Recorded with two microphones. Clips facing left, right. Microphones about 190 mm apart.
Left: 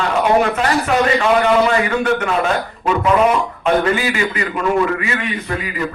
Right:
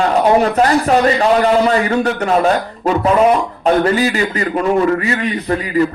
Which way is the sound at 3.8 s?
40° right (ahead or behind).